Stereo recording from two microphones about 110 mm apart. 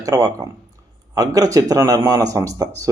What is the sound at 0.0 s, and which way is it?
A man's voice, 30° right (ahead or behind).